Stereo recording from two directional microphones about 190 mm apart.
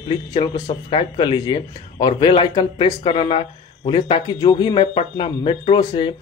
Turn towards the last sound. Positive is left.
turn(degrees=25)  # may be behind; listen again after turning